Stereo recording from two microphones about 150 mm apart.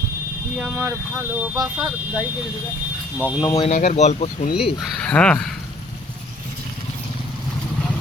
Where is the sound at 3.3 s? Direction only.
25° left (ahead or behind).